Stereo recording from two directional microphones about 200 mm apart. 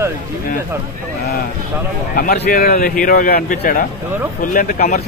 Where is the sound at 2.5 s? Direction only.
50° left (ahead or behind).